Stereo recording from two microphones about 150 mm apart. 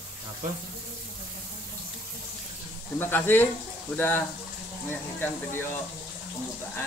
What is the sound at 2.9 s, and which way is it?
Speech, 15° left (ahead or behind).